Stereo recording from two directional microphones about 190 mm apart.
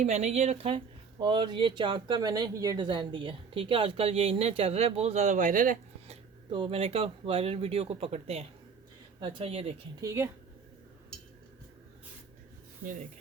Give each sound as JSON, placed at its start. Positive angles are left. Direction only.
{"t": 0.0, "sound": "speech", "side_deg": -35}
{"t": 6.5, "sound": "speech", "side_deg": -25}
{"t": 10.0, "sound": "a woman's voice", "side_deg": -15}